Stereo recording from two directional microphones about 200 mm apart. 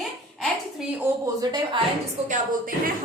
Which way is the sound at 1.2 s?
20° right (ahead or behind).